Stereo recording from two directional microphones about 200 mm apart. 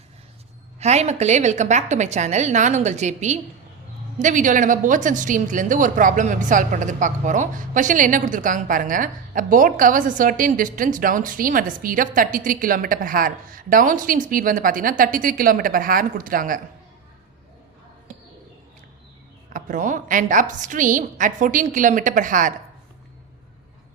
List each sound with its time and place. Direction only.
0.8 s a woman's voice: 35° right (ahead or behind)
19.5 s a woman's voice: 40° right (ahead or behind)